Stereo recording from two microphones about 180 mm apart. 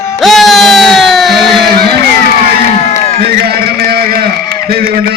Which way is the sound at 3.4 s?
60° right (ahead or behind).